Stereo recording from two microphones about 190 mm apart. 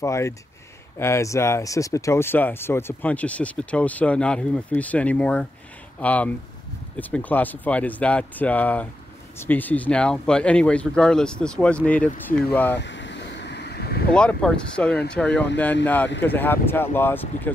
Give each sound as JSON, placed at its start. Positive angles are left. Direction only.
{"t": 0.0, "sound": "speech", "side_deg": 15}
{"t": 12.7, "sound": "vehicle", "side_deg": 70}
{"t": 14.1, "sound": "speech", "side_deg": 5}